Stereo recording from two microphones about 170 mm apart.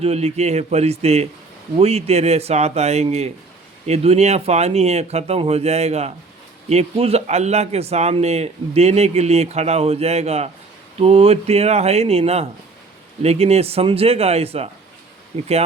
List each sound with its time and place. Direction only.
0.0 s a man's voice: 40° right (ahead or behind)